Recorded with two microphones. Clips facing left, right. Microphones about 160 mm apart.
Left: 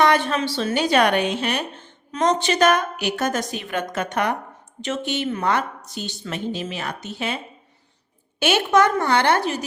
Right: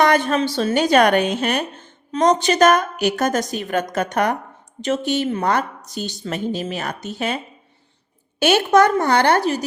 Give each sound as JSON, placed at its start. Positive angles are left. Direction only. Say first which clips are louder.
{"t": 0.0, "sound": "a sound", "louder": "right 2 dB", "side_deg": -45}
{"t": 0.4, "sound": "a woman's voice", "louder": "right 3 dB", "side_deg": -45}
{"t": 8.4, "sound": "a woman's voice", "louder": "right 3 dB", "side_deg": -40}